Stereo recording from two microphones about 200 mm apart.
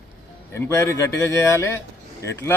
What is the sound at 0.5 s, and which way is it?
Speech, 15° left (ahead or behind).